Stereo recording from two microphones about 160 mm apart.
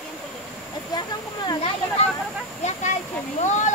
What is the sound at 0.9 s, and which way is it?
Speech, 25° left (ahead or behind).